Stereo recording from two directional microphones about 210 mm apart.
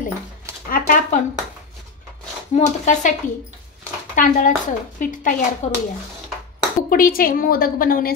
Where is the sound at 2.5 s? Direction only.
35° left (ahead or behind).